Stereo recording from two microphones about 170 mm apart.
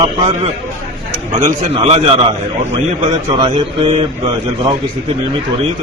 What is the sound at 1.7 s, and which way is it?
A man's voice, 35° right (ahead or behind).